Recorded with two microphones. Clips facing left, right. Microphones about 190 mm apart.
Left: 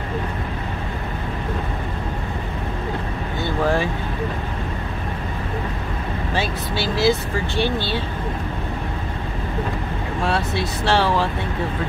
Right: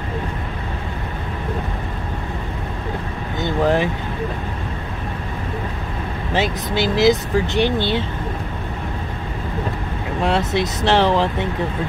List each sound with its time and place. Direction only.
3.3 s vehicle: 20° right (ahead or behind)
6.3 s speech: 20° right (ahead or behind)
10.2 s speech: 20° right (ahead or behind)